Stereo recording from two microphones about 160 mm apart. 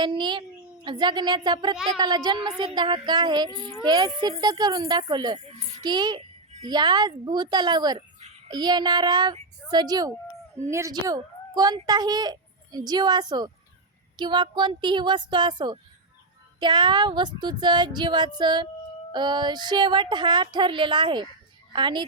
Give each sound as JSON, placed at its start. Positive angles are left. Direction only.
{"t": 0.0, "sound": "speech", "side_deg": -30}